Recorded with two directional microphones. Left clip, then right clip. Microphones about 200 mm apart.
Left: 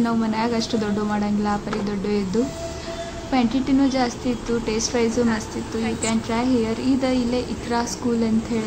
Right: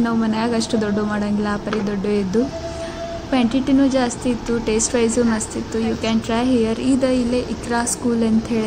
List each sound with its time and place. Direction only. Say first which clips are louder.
0.0 s a woman's voice: right 2 dB; 20° right (ahead or behind)
3.3 s a woman's voice: right 2 dB; 20° right (ahead or behind)